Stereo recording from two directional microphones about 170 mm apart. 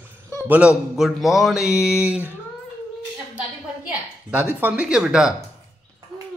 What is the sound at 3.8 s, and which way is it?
A woman's voice, 10° right (ahead or behind).